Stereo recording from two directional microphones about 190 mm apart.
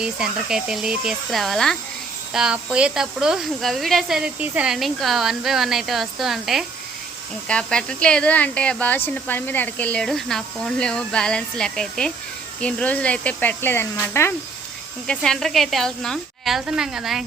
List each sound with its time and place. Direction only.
0.0 s speech: 5° right (ahead or behind)